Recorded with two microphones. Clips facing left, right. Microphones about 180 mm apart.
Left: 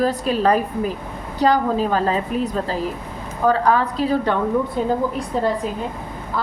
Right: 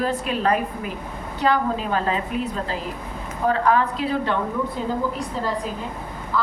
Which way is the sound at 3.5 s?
35° left (ahead or behind).